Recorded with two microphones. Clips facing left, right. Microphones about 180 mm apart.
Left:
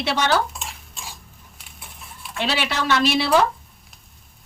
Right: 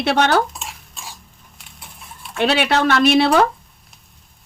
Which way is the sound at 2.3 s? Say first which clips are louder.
Right 7 dB; 60° right (ahead or behind).